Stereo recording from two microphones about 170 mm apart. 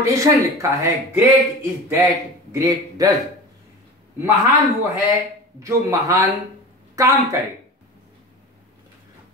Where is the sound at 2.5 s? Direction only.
20° right (ahead or behind).